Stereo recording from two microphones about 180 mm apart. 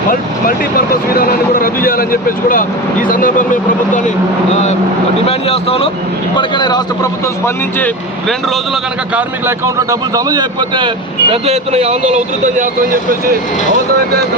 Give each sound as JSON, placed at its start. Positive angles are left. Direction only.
{"t": 1.1, "sound": "speech", "side_deg": 55}
{"t": 5.2, "sound": "a man's voice", "side_deg": 35}
{"t": 8.3, "sound": "a man's voice", "side_deg": 0}
{"t": 9.5, "sound": "speech", "side_deg": -15}